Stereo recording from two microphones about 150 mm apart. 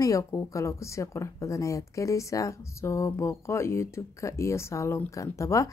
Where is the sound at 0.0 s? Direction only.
20° left (ahead or behind).